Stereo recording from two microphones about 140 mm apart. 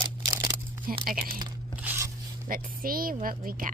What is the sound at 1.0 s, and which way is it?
Speech, 90° right.